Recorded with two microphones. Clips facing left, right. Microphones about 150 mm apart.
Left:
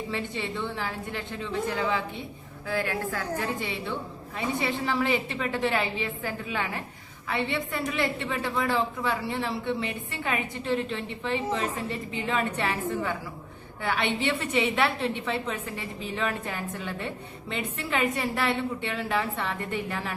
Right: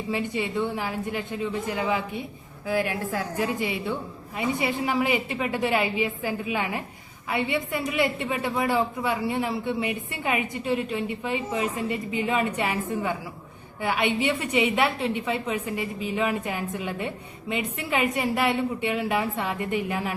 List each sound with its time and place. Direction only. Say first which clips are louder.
0.1 s a woman's voice: right 9 dB; 15° right (ahead or behind)
14.0 s a woman's voice: right 4 dB; 5° right (ahead or behind)
18.1 s a woman's voice: right 3 dB; 20° right (ahead or behind)